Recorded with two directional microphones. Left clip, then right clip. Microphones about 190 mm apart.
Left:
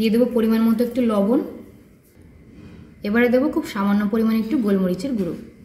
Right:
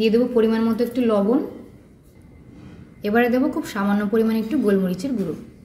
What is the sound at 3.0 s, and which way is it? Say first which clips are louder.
A woman's voice: left 1 dB; 35° right (ahead or behind).